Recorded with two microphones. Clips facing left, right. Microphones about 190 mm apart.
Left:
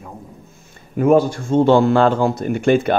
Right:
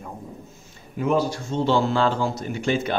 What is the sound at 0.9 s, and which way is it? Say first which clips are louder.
Speech: left 8 dB; 55° left (ahead or behind).